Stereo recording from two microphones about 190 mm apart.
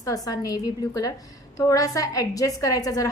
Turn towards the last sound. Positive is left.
turn(degrees=20)  # may be behind; listen again after turning